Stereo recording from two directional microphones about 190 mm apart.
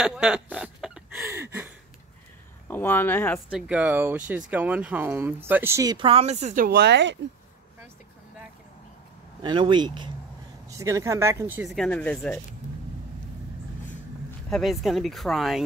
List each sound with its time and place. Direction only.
0.0 s a sound: 5° right (ahead or behind)
1.2 s a sound: 15° right (ahead or behind)
2.7 s speech: 10° left (ahead or behind)
3.4 s speech: 5° right (ahead or behind); by 7.2 s 65° right (ahead or behind)
9.4 s speech: 25° right (ahead or behind)
11.7 s speech: 5° left (ahead or behind)
14.5 s speech: centre (ahead or behind)